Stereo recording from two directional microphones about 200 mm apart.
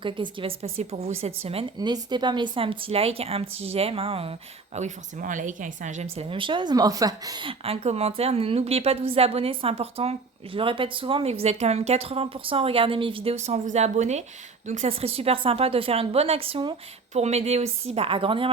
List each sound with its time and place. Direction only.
0.0 s a woman's voice: 25° right (ahead or behind)